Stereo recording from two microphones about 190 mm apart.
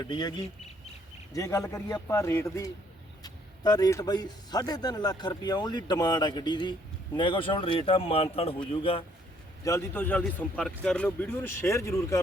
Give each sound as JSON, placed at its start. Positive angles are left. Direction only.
{"t": 0.0, "sound": "speech", "side_deg": 20}
{"t": 9.6, "sound": "speech", "side_deg": 15}